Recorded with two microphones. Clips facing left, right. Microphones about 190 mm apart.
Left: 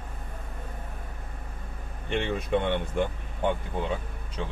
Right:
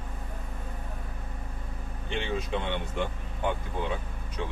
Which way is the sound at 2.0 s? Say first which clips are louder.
Left 3 dB; 55° left (ahead or behind).